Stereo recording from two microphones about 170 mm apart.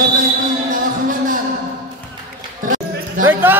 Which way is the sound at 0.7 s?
50° right (ahead or behind).